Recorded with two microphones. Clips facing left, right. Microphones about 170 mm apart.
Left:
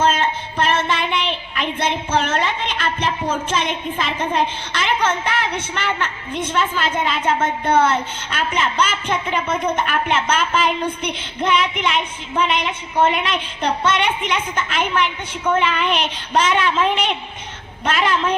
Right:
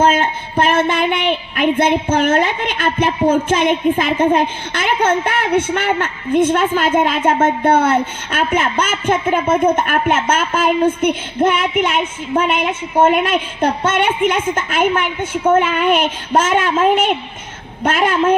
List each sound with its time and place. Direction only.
0.0 s a woman's voice: 50° right (ahead or behind)